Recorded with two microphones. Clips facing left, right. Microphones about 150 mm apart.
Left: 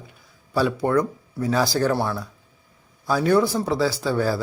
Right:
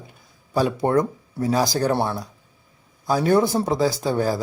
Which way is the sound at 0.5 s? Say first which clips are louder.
Right 1 dB; 20° right (ahead or behind).